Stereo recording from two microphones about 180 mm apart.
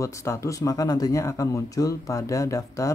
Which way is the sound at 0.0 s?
15° left (ahead or behind).